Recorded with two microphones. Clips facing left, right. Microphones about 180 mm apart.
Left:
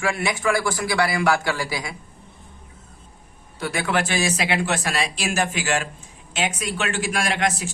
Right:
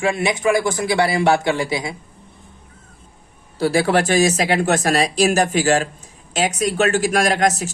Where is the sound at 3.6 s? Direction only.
30° right (ahead or behind).